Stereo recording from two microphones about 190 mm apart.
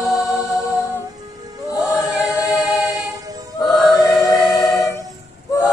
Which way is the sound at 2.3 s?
20° left (ahead or behind).